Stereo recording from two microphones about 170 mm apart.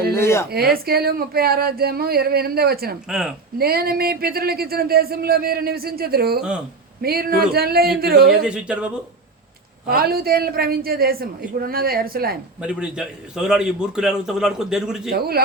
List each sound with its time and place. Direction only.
0.1 s a sound: 15° left (ahead or behind)
0.5 s a man's voice: 65° right (ahead or behind)
3.1 s a man's voice: 5° right (ahead or behind)
3.6 s a man's voice: 65° right (ahead or behind)
8.3 s speech: 5° right (ahead or behind)
9.9 s a man's voice: 65° right (ahead or behind)
12.6 s a man's voice: 5° right (ahead or behind)
15.1 s a man's voice: 65° right (ahead or behind)